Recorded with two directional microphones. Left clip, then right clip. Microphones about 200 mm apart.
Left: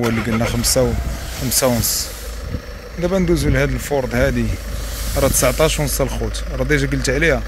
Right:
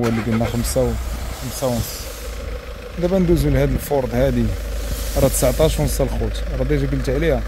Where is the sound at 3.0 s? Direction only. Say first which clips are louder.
Even; 10° right (ahead or behind).